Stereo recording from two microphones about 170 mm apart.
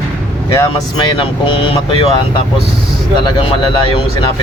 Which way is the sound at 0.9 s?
30° left (ahead or behind).